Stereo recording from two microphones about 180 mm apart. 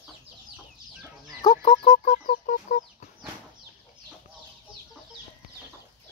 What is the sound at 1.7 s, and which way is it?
Chicken, 30° left (ahead or behind).